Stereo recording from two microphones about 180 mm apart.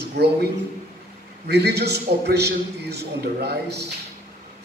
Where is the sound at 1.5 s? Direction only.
65° right (ahead or behind).